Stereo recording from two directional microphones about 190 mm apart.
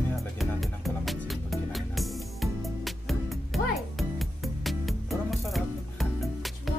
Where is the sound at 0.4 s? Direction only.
Centre (ahead or behind).